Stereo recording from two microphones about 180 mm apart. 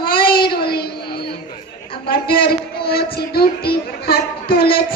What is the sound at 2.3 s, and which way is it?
Speech, 60° left (ahead or behind).